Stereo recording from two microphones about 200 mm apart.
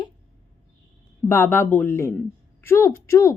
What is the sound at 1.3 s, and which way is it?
A woman's voice, 10° left (ahead or behind).